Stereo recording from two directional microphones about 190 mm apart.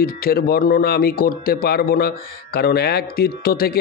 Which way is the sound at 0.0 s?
55° left (ahead or behind).